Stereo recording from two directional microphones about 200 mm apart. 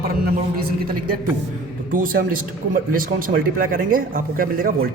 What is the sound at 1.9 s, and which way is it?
Speech, 45° right (ahead or behind).